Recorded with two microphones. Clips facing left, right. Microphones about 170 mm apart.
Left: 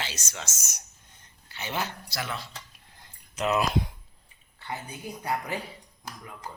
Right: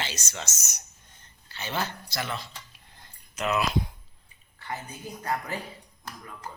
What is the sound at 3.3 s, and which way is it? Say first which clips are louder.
Speech: left 2 dB; 30° left (ahead or behind).